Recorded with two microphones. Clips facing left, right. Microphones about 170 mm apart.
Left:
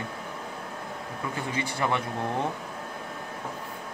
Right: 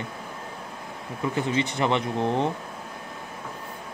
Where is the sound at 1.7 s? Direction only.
20° right (ahead or behind).